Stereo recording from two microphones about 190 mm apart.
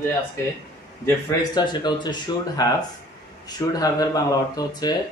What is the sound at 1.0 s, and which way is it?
Speech, 20° left (ahead or behind).